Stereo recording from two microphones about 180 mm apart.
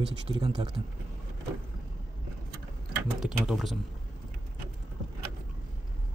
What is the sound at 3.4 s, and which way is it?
Speech, centre (ahead or behind).